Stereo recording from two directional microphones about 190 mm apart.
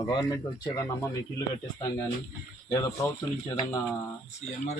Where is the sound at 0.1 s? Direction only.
20° left (ahead or behind).